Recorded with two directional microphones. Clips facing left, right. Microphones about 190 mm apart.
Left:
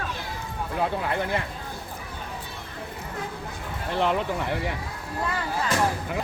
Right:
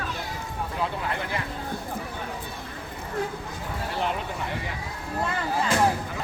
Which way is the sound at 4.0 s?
65° left (ahead or behind).